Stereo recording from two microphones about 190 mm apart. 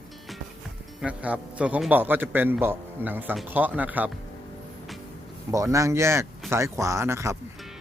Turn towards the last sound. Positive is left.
turn(degrees=-15)  # may be behind; listen again after turning